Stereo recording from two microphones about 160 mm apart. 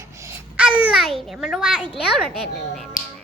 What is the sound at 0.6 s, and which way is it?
Babbling, 5° right (ahead or behind).